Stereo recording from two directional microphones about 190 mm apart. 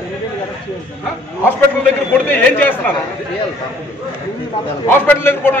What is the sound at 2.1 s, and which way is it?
Speech, 10° left (ahead or behind).